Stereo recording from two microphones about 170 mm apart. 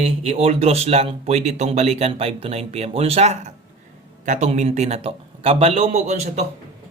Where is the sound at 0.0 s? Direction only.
40° right (ahead or behind).